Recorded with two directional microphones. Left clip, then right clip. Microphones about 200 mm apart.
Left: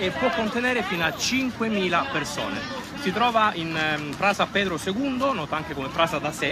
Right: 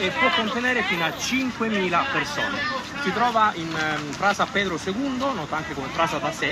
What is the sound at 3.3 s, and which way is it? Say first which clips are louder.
Speech: right 1 dB; 25° left (ahead or behind).